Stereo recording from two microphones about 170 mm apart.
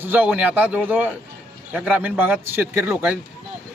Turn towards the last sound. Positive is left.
turn(degrees=-10)  # may be behind; listen again after turning